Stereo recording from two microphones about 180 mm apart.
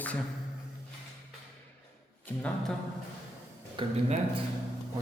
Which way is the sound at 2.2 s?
5° left (ahead or behind).